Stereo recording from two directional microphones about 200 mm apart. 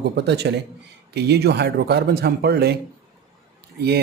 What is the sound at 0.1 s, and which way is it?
A man's voice, 60° right (ahead or behind).